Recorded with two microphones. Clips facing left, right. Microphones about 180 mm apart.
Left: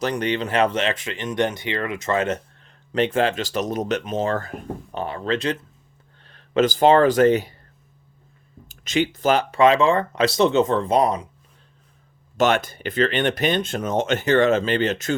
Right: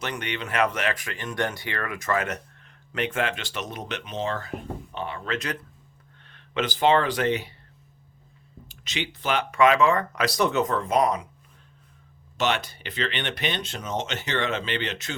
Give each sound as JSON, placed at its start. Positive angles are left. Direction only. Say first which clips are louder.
{"t": 0.0, "sound": "speech", "louder": "left 9 dB", "side_deg": 35}
{"t": 8.6, "sound": "speech", "louder": "left 11 dB", "side_deg": 45}
{"t": 12.4, "sound": "speech", "louder": "left 7 dB", "side_deg": 50}